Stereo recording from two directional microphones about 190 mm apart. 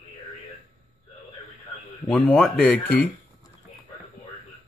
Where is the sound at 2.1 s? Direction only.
10° left (ahead or behind).